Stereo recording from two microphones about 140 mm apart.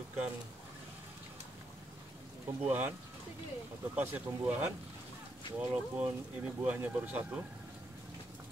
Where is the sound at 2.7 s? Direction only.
15° right (ahead or behind).